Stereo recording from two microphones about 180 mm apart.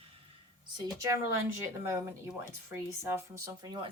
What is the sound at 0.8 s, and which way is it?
A woman's voice, 15° right (ahead or behind).